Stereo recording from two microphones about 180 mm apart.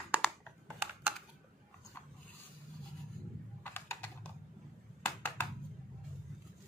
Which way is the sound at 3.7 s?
10° left (ahead or behind).